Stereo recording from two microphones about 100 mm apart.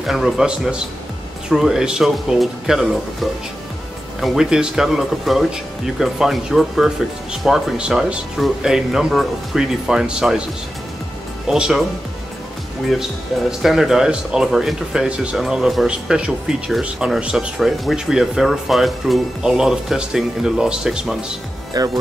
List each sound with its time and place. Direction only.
0.0 s speech: 5° right (ahead or behind)
11.4 s speech: 5° right (ahead or behind)
13.5 s speech: 5° right (ahead or behind)
21.7 s speech: 40° right (ahead or behind)